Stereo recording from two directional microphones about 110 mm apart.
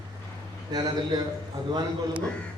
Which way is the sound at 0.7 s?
40° right (ahead or behind).